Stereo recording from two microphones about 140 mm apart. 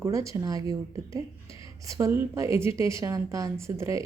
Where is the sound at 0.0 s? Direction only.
20° right (ahead or behind).